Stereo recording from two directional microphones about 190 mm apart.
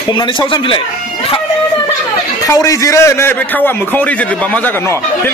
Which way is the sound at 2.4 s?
15° left (ahead or behind).